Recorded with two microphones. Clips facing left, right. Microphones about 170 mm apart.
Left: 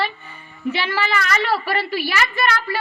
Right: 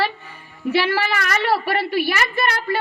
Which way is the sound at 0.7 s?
70° right (ahead or behind).